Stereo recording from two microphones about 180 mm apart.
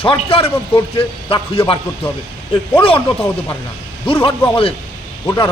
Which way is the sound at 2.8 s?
30° left (ahead or behind).